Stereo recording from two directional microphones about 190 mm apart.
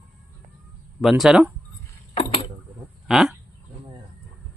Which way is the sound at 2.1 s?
25° left (ahead or behind).